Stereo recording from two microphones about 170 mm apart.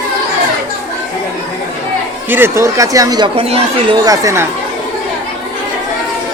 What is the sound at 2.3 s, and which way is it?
Speech, 15° right (ahead or behind).